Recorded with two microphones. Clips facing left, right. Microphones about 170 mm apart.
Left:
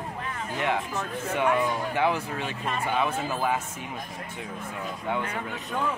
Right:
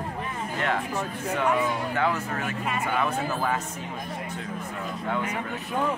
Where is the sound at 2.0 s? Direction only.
20° left (ahead or behind).